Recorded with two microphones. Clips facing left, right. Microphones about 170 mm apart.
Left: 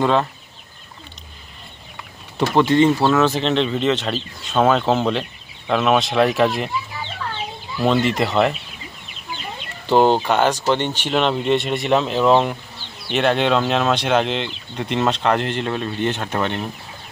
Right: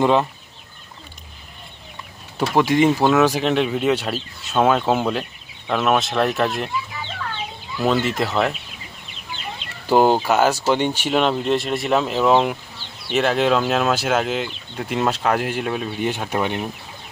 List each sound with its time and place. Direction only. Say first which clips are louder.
0.0 s speech: right 1 dB; 15° right (ahead or behind)
2.4 s speech: left 2 dB; 10° right (ahead or behind)
7.9 s speech: left 2 dB; centre (ahead or behind)
9.8 s speech: even; 10° right (ahead or behind)